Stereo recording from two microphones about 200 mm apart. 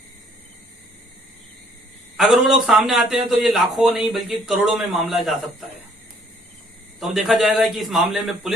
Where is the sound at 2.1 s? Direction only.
5° right (ahead or behind).